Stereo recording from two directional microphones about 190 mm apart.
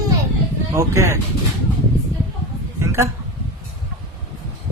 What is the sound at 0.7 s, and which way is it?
Speech, 15° right (ahead or behind).